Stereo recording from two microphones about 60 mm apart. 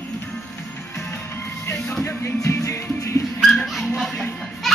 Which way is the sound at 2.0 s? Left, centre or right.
Left.